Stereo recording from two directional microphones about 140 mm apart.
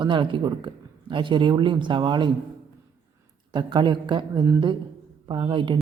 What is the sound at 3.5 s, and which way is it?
Speech, 30° right (ahead or behind).